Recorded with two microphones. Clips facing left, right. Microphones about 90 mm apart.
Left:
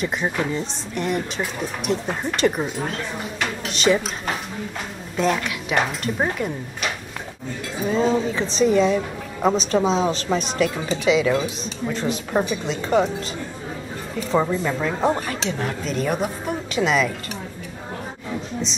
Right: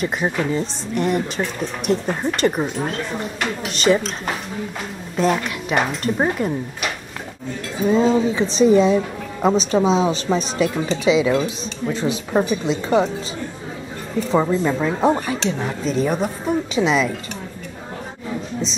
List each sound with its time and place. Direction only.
0.4 s a woman's voice: centre (ahead or behind)
14.3 s a woman's voice: 5° right (ahead or behind)